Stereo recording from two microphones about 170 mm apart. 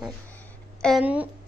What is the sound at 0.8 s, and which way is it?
Speech, 5° left (ahead or behind).